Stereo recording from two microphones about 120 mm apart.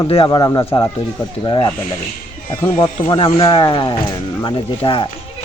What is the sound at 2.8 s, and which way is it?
Speech, 40° left (ahead or behind).